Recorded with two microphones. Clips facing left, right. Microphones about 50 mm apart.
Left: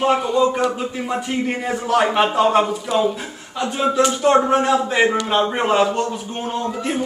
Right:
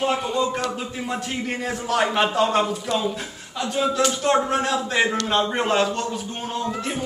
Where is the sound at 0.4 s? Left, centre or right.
Centre.